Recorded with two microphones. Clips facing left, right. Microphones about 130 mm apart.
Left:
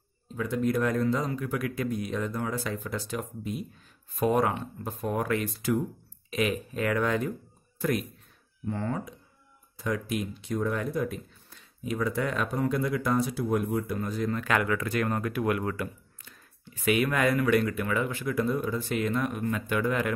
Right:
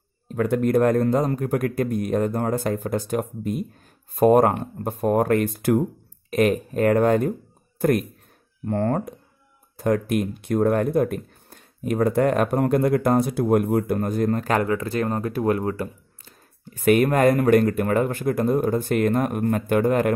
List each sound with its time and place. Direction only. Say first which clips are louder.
0.3 s speech: right 8 dB; 60° right (ahead or behind); by 16.3 s 30° right (ahead or behind)
16.6 s speech: right 8 dB; 45° right (ahead or behind)